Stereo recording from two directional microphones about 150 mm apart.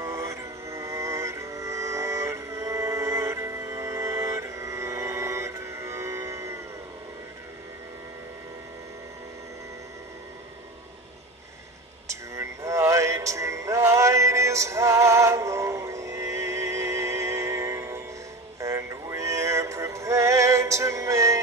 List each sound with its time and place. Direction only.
0.0 s music: 20° right (ahead or behind)
12.1 s music: 20° right (ahead or behind)
18.6 s a sound: 20° right (ahead or behind)